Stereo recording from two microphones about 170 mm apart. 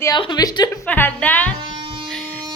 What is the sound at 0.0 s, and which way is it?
Speech, 25° left (ahead or behind).